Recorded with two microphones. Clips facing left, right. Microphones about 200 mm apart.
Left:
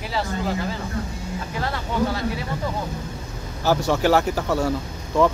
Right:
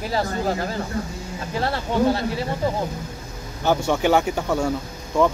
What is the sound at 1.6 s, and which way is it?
Speech, 30° right (ahead or behind).